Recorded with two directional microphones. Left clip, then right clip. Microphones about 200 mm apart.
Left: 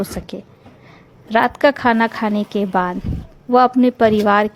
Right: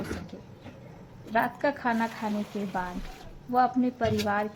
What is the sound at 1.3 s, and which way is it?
A woman's voice, 50° left (ahead or behind).